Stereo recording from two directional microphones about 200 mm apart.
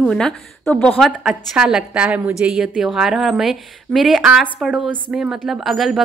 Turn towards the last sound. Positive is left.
turn(degrees=0)  # may be behind; listen again after turning